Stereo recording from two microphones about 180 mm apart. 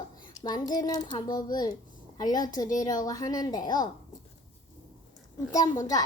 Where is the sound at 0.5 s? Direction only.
20° left (ahead or behind).